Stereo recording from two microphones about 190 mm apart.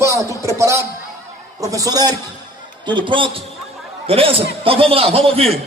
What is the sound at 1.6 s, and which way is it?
A man's voice, 20° right (ahead or behind).